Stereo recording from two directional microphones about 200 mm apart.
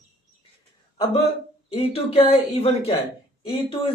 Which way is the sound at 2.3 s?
30° left (ahead or behind).